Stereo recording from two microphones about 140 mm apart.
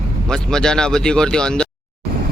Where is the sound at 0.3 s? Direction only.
5° left (ahead or behind).